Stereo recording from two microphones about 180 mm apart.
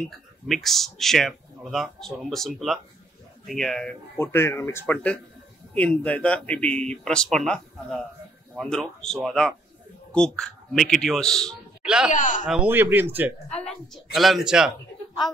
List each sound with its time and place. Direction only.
0.5 s speech: centre (ahead or behind)
4.2 s a man's voice: 15° left (ahead or behind); by 12.1 s 5° right (ahead or behind)
12.1 s speech: 45° left (ahead or behind)
12.4 s speech: 5° right (ahead or behind)